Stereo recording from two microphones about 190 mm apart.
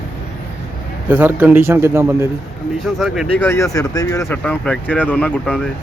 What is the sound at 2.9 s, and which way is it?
Speech, centre (ahead or behind).